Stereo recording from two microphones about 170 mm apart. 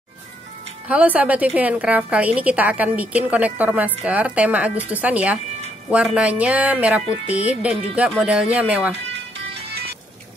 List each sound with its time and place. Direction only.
0.8 s a woman's voice: 10° right (ahead or behind)
9.7 s music: 70° right (ahead or behind)